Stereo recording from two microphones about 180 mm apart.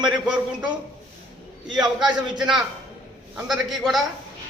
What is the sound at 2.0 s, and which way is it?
Speech, 25° right (ahead or behind).